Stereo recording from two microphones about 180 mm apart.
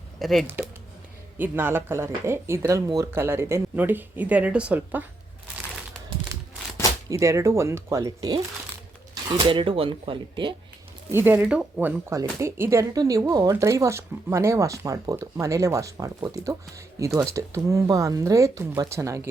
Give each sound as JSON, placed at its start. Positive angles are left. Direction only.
{"t": 0.2, "sound": "speech", "side_deg": 0}
{"t": 0.4, "sound": "speech", "side_deg": -10}
{"t": 6.3, "sound": "a sound", "side_deg": -15}
{"t": 7.1, "sound": "speech", "side_deg": -15}
{"t": 11.1, "sound": "speech", "side_deg": -10}